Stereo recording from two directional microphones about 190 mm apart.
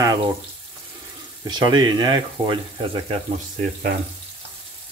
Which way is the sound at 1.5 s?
20° right (ahead or behind).